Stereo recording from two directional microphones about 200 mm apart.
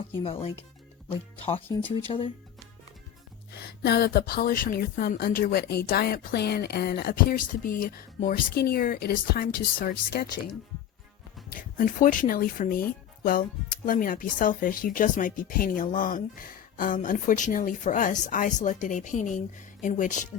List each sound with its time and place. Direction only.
0.2 s speech: 30° left (ahead or behind)
1.6 s speech: 10° left (ahead or behind)
3.6 s speech: 55° left (ahead or behind); by 20.2 s 40° left (ahead or behind)